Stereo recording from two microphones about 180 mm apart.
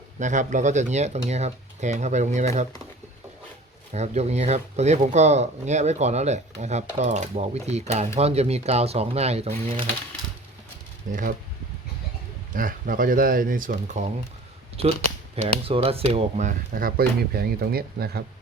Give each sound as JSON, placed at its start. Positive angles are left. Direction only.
{"t": 0.2, "sound": "speech", "side_deg": -45}
{"t": 3.9, "sound": "speech", "side_deg": -40}
{"t": 11.1, "sound": "speech", "side_deg": -45}
{"t": 12.5, "sound": "speech", "side_deg": -50}
{"t": 15.4, "sound": "speech", "side_deg": -30}
{"t": 16.5, "sound": "speech", "side_deg": -55}